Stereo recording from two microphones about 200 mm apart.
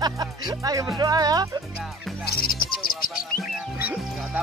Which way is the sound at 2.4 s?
50° left (ahead or behind).